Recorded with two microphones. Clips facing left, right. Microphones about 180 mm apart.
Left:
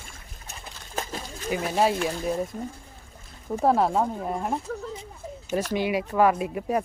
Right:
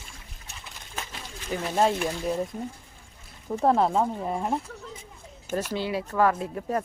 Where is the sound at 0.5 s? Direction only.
40° left (ahead or behind).